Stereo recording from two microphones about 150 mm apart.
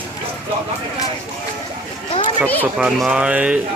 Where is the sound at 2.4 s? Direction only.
10° left (ahead or behind).